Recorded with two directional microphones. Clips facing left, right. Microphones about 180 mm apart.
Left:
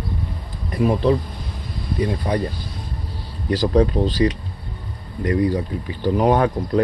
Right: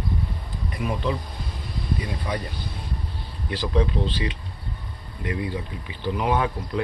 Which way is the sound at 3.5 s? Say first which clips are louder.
Left 7 dB; 40° left (ahead or behind).